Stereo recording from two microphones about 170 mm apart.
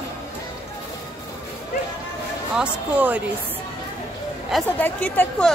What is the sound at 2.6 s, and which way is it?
Speech, 10° right (ahead or behind).